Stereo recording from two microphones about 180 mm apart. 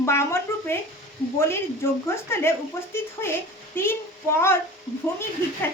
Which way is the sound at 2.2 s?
15° left (ahead or behind).